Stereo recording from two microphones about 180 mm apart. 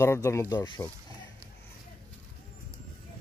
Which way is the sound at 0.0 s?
15° left (ahead or behind).